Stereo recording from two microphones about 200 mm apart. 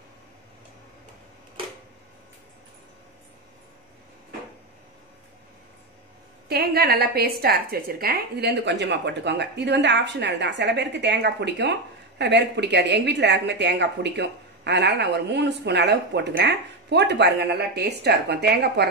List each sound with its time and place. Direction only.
6.5 s a woman's voice: 50° right (ahead or behind)